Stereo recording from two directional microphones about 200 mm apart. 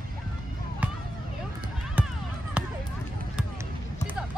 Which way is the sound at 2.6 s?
5° right (ahead or behind).